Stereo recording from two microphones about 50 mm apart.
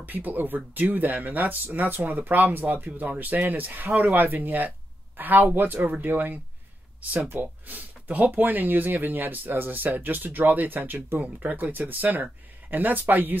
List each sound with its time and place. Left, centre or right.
0.0 s speech: right